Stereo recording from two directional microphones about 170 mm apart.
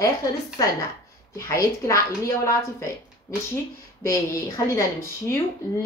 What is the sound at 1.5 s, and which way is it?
Speech, 20° left (ahead or behind).